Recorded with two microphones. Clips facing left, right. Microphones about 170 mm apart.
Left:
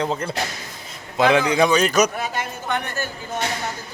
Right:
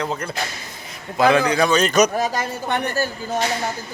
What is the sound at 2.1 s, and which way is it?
Speech, 35° right (ahead or behind).